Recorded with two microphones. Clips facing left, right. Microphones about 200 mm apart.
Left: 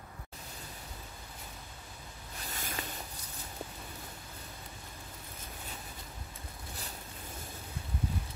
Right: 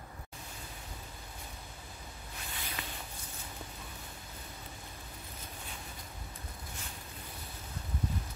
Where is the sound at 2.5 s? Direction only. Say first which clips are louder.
Left 3 dB; 45° left (ahead or behind).